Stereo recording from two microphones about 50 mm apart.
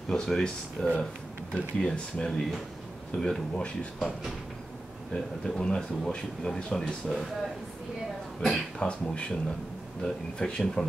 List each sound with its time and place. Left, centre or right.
0.1 s speech: centre
5.1 s speech: centre
8.4 s speech: centre
8.7 s speech: left
10.0 s speech: centre